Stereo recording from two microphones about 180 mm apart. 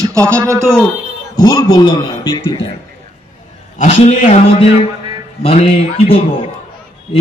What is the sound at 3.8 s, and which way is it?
A man's voice, 35° left (ahead or behind).